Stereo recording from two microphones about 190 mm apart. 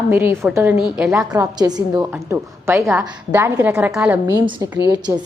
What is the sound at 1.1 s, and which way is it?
Speech, 15° right (ahead or behind).